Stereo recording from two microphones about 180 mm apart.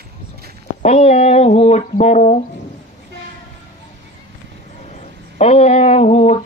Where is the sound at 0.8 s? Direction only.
35° left (ahead or behind).